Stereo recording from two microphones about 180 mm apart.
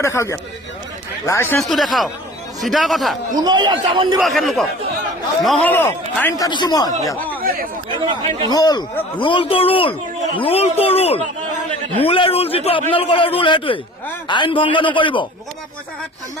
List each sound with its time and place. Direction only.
0.0 s speech: 15° left (ahead or behind)
1.6 s a man's voice: centre (ahead or behind)
3.3 s a man's voice: 25° right (ahead or behind)
4.2 s a man's voice: centre (ahead or behind)
8.4 s a man's voice: 20° left (ahead or behind)